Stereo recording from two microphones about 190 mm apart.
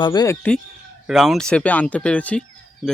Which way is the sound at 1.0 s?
5° right (ahead or behind).